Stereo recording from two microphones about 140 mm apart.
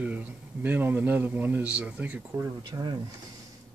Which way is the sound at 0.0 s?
10° right (ahead or behind).